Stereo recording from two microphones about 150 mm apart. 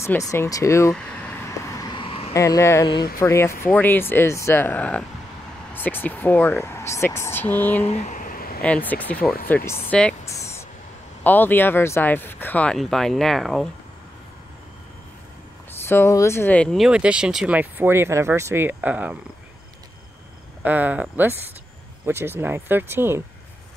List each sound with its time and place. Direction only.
0.0 s speech: 20° left (ahead or behind)
0.9 s vehicle: 15° left (ahead or behind); by 2.3 s 40° left (ahead or behind)
2.3 s speech: 20° left (ahead or behind)
7.8 s a sound: 45° left (ahead or behind); by 8.6 s 75° left (ahead or behind)
8.6 s speech: 10° left (ahead or behind)
10.2 s a sound: 20° left (ahead or behind)
11.2 s speech: 10° left (ahead or behind)
15.8 s speech: 15° left (ahead or behind); by 19.1 s 10° right (ahead or behind)
20.6 s speech: 10° right (ahead or behind)